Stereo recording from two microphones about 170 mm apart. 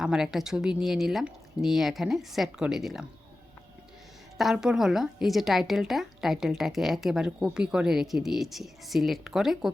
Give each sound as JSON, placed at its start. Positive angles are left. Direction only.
{"t": 0.0, "sound": "a woman's voice", "side_deg": -5}
{"t": 4.4, "sound": "a woman's voice", "side_deg": 0}